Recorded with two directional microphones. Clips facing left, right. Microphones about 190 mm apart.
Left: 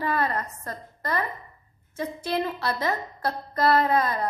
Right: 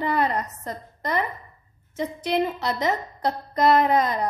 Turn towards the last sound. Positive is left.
turn(degrees=-20)  # may be behind; listen again after turning